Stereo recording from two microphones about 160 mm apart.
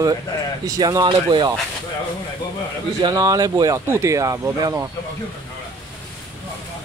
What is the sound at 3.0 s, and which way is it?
Speech, 20° right (ahead or behind).